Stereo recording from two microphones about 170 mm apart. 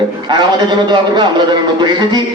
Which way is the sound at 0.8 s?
25° right (ahead or behind).